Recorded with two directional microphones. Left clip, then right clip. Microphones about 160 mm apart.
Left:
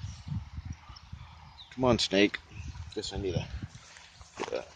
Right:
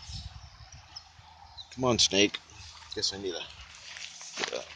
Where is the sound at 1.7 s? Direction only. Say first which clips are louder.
Right 1 dB; 25° left (ahead or behind).